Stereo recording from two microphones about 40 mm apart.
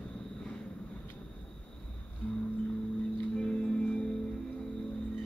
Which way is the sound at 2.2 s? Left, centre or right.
Left.